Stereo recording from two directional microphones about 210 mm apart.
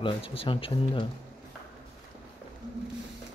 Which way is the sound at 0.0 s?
25° left (ahead or behind).